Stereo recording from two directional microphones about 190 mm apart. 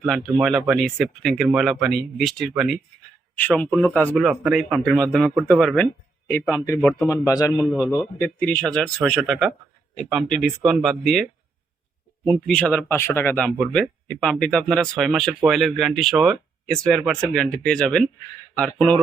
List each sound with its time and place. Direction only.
0.0 s speech: centre (ahead or behind)
4.2 s speech: 5° right (ahead or behind); by 7.7 s 15° left (ahead or behind)
8.2 s speech: 5° left (ahead or behind)